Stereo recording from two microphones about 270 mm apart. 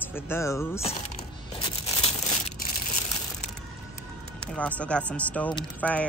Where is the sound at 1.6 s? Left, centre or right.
Centre.